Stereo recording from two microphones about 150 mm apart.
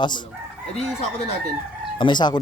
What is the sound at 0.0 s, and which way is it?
Chicken, 30° left (ahead or behind).